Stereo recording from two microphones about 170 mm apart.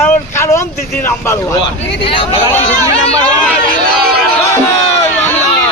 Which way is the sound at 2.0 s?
30° left (ahead or behind).